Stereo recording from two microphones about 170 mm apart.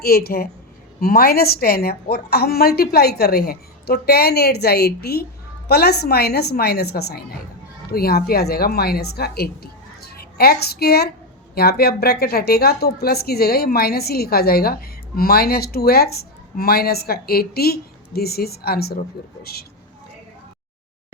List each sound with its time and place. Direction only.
0.0 s a woman's voice: 65° left (ahead or behind)